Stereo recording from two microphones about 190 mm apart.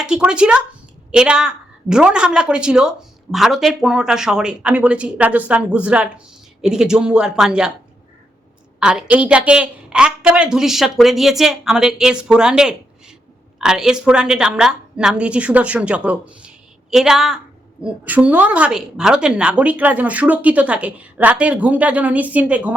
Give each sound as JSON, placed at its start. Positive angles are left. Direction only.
{"t": 0.0, "sound": "a woman's voice", "side_deg": -5}
{"t": 8.8, "sound": "a woman's voice", "side_deg": -5}